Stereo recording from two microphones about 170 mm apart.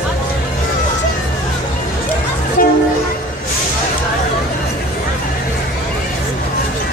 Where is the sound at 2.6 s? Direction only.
55° left (ahead or behind).